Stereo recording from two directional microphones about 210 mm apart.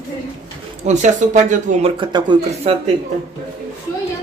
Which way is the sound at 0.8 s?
35° right (ahead or behind).